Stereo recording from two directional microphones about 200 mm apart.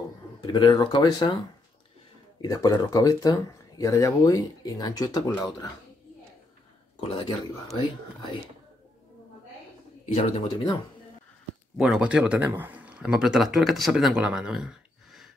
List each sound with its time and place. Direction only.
0.5 s speech: 20° left (ahead or behind)
2.4 s speech: 20° left (ahead or behind)
7.0 s speech: 25° left (ahead or behind)
10.1 s speech: 20° left (ahead or behind)
11.7 s speech: centre (ahead or behind)